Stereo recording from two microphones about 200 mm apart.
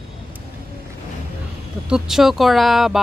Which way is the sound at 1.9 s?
Centre (ahead or behind).